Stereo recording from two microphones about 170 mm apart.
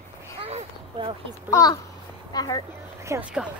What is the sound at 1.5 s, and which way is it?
A child's voice, 20° left (ahead or behind).